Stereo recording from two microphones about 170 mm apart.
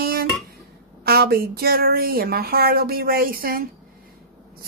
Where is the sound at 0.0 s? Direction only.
65° right (ahead or behind).